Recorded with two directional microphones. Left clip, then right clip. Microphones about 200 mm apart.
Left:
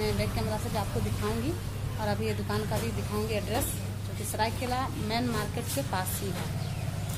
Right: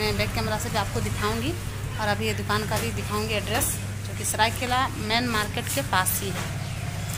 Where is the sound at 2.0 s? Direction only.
Centre (ahead or behind).